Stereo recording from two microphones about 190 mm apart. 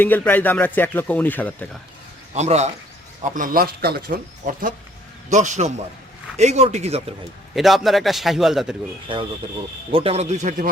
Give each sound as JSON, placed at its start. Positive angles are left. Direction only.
{"t": 0.0, "sound": "speech", "side_deg": 10}
{"t": 2.3, "sound": "a man's voice", "side_deg": -35}
{"t": 3.3, "sound": "a man's voice", "side_deg": -45}
{"t": 7.5, "sound": "a man's voice", "side_deg": 0}
{"t": 9.1, "sound": "a man's voice", "side_deg": -25}